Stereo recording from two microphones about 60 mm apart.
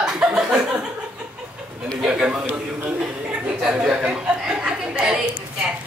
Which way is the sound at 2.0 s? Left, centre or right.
Centre.